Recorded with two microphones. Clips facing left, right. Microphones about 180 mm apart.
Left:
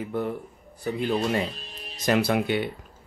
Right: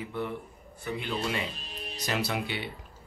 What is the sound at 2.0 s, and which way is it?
Speech, 55° left (ahead or behind).